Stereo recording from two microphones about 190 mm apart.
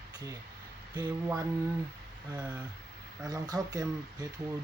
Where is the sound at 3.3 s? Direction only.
20° right (ahead or behind).